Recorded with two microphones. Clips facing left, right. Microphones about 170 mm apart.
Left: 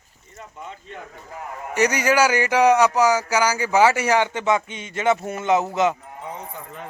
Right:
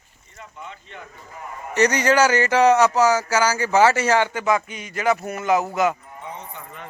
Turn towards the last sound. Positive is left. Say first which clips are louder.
# even
turn(degrees=25)  # may be behind; listen again after turning